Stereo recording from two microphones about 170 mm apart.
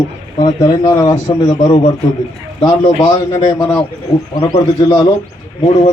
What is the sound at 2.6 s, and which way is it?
A man's voice, 25° left (ahead or behind).